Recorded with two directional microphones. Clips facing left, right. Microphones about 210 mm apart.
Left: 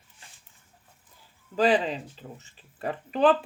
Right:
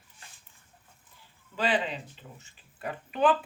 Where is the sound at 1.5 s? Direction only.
40° left (ahead or behind).